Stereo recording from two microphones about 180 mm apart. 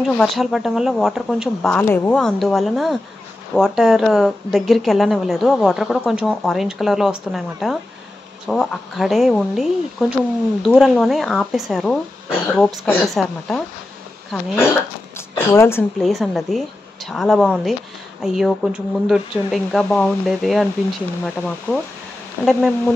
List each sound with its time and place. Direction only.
0.2 s a woman's voice: centre (ahead or behind)
15.1 s zipper: 15° left (ahead or behind)
16.0 s a woman's voice: centre (ahead or behind)